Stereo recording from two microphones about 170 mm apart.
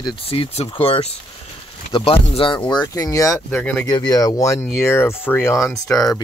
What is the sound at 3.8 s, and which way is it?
Speech, 20° left (ahead or behind).